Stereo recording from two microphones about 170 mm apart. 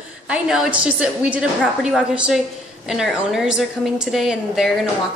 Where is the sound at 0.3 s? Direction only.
5° right (ahead or behind).